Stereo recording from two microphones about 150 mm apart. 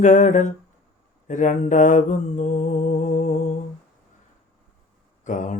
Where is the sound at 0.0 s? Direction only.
55° left (ahead or behind).